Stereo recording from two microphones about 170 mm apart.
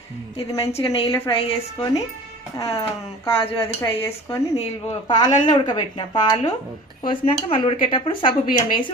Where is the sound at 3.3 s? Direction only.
30° left (ahead or behind).